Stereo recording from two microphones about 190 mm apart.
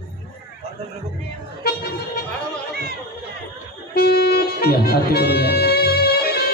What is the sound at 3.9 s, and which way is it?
Music, 55° left (ahead or behind).